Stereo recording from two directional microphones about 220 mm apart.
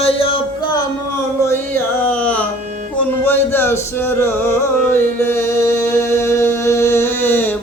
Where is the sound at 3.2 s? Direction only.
10° left (ahead or behind).